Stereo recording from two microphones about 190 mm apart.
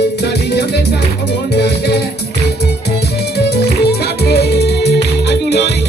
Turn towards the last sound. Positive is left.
turn(degrees=60)  # may be behind; listen again after turning